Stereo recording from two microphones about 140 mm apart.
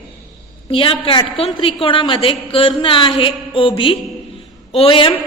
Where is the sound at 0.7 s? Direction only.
40° left (ahead or behind).